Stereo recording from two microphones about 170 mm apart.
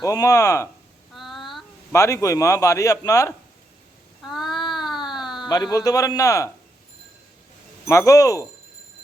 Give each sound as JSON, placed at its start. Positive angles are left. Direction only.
{"t": 0.0, "sound": "a man's voice", "side_deg": 20}
{"t": 1.1, "sound": "child singing", "side_deg": 0}
{"t": 1.9, "sound": "a man's voice", "side_deg": 15}
{"t": 4.2, "sound": "child singing", "side_deg": 0}
{"t": 5.2, "sound": "a sound", "side_deg": 0}
{"t": 5.7, "sound": "a man's voice", "side_deg": 20}
{"t": 7.9, "sound": "a man's voice", "side_deg": 20}